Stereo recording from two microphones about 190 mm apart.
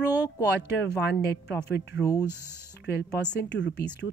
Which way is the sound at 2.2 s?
10° right (ahead or behind).